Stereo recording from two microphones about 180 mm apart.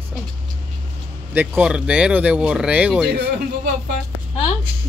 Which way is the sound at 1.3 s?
10° right (ahead or behind).